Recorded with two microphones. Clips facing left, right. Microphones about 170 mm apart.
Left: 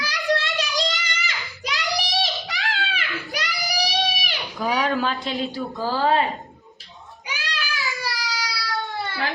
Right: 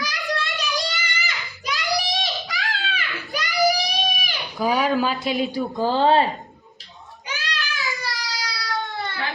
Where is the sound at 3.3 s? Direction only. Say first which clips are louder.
Right 10 dB; 80° left.